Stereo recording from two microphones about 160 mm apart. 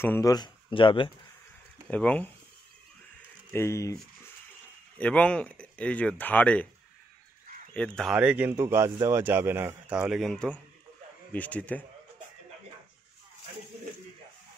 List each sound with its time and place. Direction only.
0.0 s speech: 15° left (ahead or behind)
0.3 s speech: 30° left (ahead or behind)
1.9 s speech: 10° left (ahead or behind)
3.5 s speech: 15° left (ahead or behind)
4.9 s speech: 10° left (ahead or behind)
7.7 s speech: 5° left (ahead or behind)